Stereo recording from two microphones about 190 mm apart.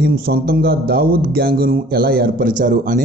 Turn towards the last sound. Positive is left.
turn(degrees=-45)  # may be behind; listen again after turning